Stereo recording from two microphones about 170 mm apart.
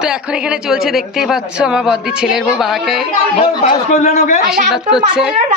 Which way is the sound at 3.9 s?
45° left (ahead or behind).